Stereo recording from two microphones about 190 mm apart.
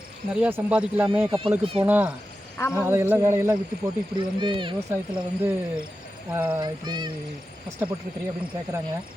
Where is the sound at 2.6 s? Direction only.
15° left (ahead or behind).